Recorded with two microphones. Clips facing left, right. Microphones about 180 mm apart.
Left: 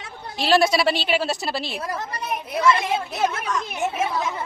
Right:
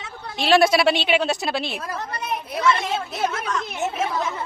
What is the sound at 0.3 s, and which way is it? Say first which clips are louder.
A woman's voice: right 2 dB; centre (ahead or behind).